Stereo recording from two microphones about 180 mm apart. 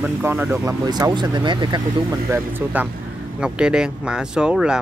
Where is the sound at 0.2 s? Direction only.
15° right (ahead or behind).